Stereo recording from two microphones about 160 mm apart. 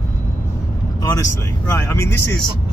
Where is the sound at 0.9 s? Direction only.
20° left (ahead or behind).